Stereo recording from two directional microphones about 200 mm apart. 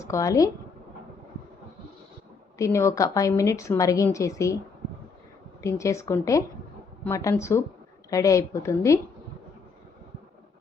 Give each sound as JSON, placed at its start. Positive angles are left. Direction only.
{"t": 0.0, "sound": "speech", "side_deg": 15}
{"t": 2.6, "sound": "a woman's voice", "side_deg": 15}
{"t": 5.6, "sound": "a woman's voice", "side_deg": 15}